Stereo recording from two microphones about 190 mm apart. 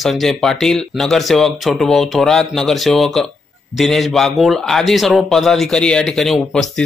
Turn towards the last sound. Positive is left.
turn(degrees=0)  # may be behind; listen again after turning